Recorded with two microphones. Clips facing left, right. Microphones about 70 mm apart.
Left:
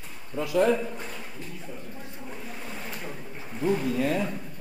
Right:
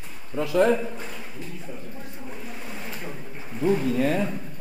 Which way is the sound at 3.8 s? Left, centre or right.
Right.